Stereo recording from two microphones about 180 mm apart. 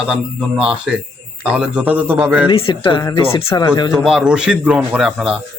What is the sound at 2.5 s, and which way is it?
Speech, 30° left (ahead or behind).